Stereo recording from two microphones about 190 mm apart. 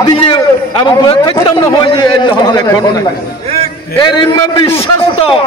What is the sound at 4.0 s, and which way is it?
Speech, 25° left (ahead or behind).